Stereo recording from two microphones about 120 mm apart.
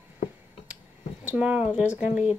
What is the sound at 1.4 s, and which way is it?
Speech, 10° right (ahead or behind).